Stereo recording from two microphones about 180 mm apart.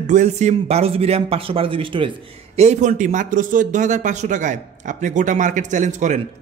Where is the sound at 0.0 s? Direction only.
40° right (ahead or behind).